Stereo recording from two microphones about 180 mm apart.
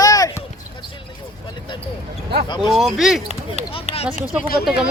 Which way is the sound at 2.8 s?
Centre (ahead or behind).